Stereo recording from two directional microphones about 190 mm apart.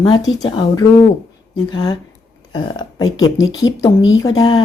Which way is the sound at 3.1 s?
90° left.